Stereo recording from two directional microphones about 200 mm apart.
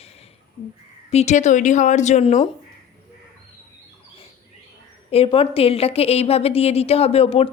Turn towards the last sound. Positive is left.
turn(degrees=30)  # may be behind; listen again after turning